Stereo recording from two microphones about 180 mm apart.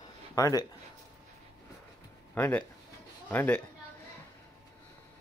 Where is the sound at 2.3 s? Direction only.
10° left (ahead or behind).